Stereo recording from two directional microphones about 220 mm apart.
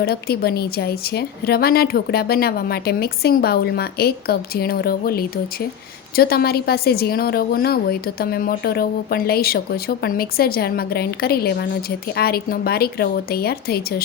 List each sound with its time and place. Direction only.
0.0 s a woman's voice: 45° left (ahead or behind)